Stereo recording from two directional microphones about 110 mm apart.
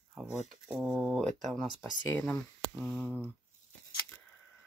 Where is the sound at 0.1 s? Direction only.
10° right (ahead or behind).